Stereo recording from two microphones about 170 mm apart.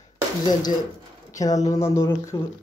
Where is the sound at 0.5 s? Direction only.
25° left (ahead or behind).